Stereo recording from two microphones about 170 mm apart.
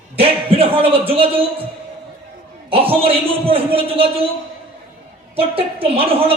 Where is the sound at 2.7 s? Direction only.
35° right (ahead or behind).